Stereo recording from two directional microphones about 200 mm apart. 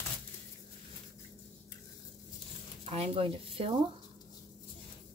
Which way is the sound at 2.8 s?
30° right (ahead or behind).